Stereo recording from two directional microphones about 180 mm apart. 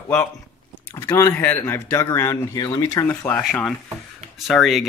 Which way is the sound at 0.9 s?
15° left (ahead or behind).